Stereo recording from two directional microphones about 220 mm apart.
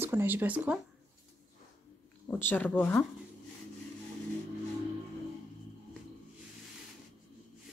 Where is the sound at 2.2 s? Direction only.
10° left (ahead or behind).